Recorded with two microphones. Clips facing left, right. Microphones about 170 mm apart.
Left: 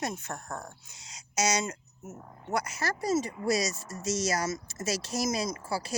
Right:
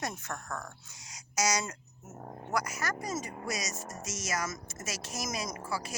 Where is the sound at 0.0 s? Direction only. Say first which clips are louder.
Left 3 dB; 20° left (ahead or behind).